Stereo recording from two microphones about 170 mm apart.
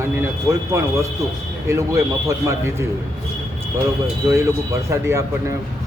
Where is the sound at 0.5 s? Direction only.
20° right (ahead or behind).